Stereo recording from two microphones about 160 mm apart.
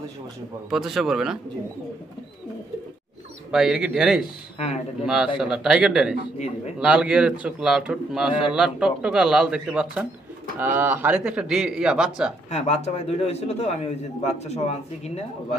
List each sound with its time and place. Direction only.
0.7 s a man's voice: centre (ahead or behind)
3.5 s a man's voice: 5° right (ahead or behind)
6.3 s speech: 45° left (ahead or behind)
6.8 s a man's voice: 5° right (ahead or behind)
12.4 s a man's voice: 45° left (ahead or behind)